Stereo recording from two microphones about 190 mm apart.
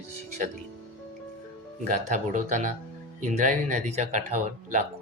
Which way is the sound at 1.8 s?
40° right (ahead or behind).